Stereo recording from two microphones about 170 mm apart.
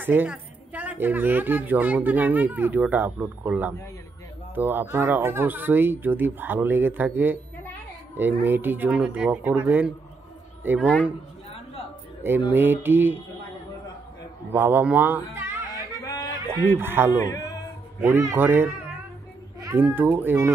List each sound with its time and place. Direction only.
0.0 s a woman's voice: 10° right (ahead or behind)
12.2 s a woman's voice: 10° right (ahead or behind)
14.5 s a woman's voice: 10° right (ahead or behind)
15.7 s a sound: 20° left (ahead or behind)
16.6 s a woman's voice: 15° right (ahead or behind)
17.3 s speech: 20° left (ahead or behind)
18.0 s a woman's voice: 15° right (ahead or behind)